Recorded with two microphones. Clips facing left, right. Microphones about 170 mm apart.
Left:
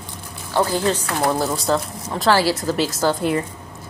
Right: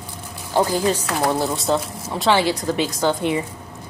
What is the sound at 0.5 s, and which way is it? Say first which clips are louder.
Speech: right 1 dB; 15° right (ahead or behind).